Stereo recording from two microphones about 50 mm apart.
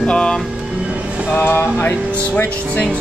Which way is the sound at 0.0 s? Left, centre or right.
Centre.